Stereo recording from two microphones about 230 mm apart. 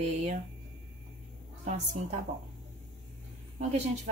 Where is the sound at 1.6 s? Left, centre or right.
Right.